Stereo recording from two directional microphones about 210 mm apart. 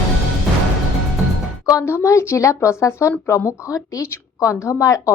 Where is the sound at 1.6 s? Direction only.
15° left (ahead or behind).